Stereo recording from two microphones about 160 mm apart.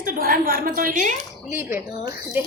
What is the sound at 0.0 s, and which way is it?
A woman's voice, 60° right (ahead or behind).